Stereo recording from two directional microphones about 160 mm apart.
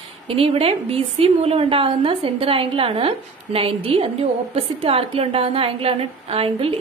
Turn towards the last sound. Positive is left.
turn(degrees=-35)  # may be behind; listen again after turning